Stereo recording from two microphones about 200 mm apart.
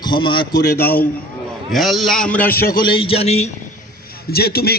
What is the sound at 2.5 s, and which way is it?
Speech, 50° left (ahead or behind).